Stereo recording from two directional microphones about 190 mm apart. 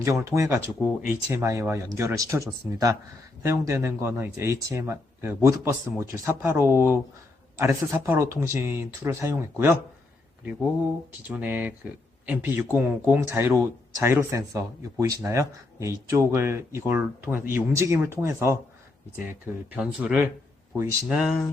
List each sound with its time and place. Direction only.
0.0 s speech: 15° right (ahead or behind)
11.2 s speech: 10° right (ahead or behind)